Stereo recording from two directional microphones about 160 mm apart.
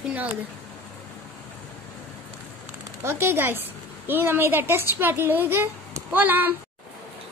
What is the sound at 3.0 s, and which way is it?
A woman's voice, 15° right (ahead or behind).